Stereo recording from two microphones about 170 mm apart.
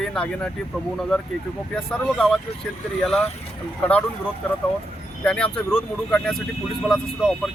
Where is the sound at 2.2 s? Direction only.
Centre (ahead or behind).